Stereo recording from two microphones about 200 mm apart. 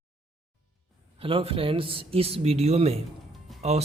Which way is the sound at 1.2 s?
25° right (ahead or behind).